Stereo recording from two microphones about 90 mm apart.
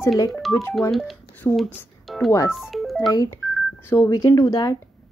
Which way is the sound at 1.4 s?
25° left (ahead or behind).